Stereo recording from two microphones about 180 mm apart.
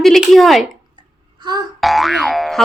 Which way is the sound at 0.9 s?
25° right (ahead or behind).